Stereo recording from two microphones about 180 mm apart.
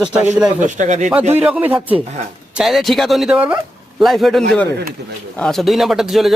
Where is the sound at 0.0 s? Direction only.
5° right (ahead or behind).